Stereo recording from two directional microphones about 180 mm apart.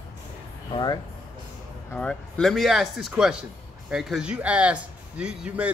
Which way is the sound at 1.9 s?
5° left (ahead or behind).